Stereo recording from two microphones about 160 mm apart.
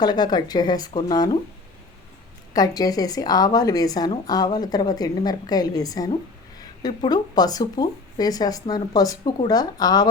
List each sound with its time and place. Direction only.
0.0 s a woman's voice: 25° left (ahead or behind)
2.5 s a woman's voice: 25° left (ahead or behind)